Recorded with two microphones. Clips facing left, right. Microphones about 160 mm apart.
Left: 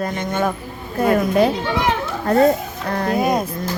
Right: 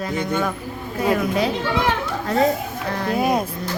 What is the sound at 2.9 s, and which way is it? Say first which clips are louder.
Speech: left 4 dB; 50° left (ahead or behind).